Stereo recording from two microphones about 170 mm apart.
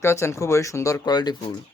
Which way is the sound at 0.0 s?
15° left (ahead or behind).